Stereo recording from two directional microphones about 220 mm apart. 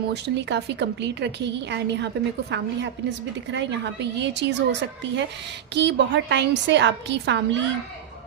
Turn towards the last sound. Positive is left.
turn(degrees=-55)  # may be behind; listen again after turning